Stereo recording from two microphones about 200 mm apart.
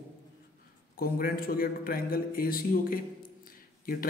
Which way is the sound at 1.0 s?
50° left (ahead or behind).